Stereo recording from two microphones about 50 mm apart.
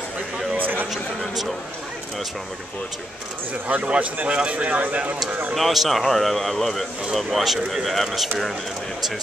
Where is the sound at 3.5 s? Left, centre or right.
Right.